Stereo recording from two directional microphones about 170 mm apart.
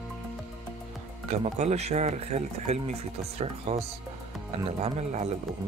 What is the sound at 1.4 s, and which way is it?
Speech, 40° right (ahead or behind).